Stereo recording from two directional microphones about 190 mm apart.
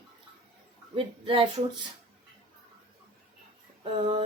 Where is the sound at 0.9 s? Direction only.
30° right (ahead or behind).